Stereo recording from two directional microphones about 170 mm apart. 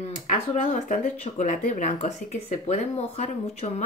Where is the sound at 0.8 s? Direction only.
45° left (ahead or behind).